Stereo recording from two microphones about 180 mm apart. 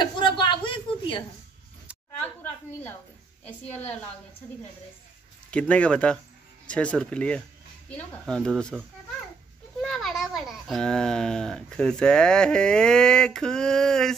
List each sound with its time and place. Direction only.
0.0 s a sound: 25° left (ahead or behind)
3.4 s speech: 10° left (ahead or behind)
5.5 s a child's voice: 5° left (ahead or behind)